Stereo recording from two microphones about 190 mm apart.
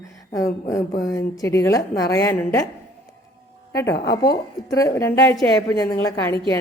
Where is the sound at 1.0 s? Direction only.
20° left (ahead or behind).